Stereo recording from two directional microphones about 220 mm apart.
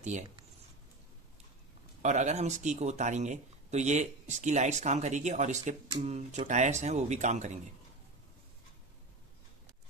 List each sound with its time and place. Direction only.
2.0 s speech: 30° right (ahead or behind)